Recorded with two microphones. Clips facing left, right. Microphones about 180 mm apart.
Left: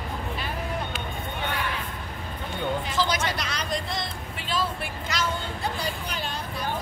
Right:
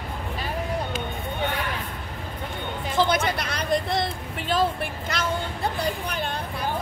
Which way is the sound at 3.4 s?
55° right (ahead or behind).